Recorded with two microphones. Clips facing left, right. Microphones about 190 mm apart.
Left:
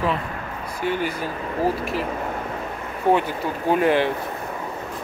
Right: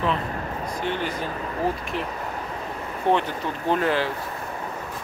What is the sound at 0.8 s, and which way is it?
Speech, 10° left (ahead or behind).